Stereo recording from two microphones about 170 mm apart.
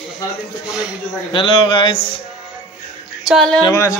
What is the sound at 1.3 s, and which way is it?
Speech, 30° left (ahead or behind).